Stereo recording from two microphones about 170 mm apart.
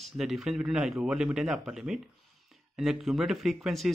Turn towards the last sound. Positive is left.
turn(degrees=0)  # may be behind; listen again after turning